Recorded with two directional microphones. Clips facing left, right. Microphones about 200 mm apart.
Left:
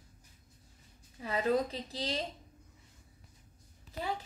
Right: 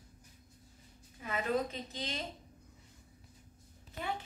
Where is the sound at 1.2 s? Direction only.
35° left (ahead or behind).